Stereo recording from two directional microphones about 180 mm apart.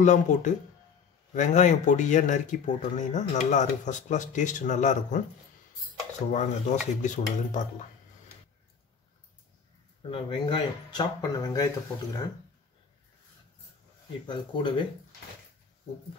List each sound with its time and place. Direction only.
0.0 s speech: 40° left (ahead or behind)
6.3 s speech: 40° left (ahead or behind)
10.0 s speech: 30° left (ahead or behind)
14.2 s speech: 25° left (ahead or behind)